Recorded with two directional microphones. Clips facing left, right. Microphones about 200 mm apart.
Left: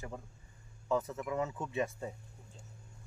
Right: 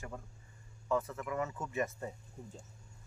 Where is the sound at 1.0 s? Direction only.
15° left (ahead or behind).